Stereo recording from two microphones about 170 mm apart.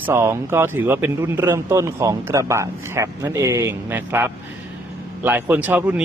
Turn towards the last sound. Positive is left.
turn(degrees=-10)  # may be behind; listen again after turning